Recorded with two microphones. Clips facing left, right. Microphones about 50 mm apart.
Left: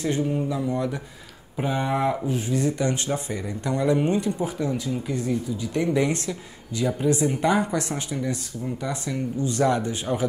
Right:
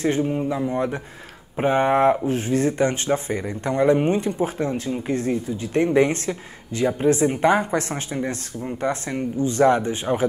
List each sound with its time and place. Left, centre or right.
0.0 s speech: right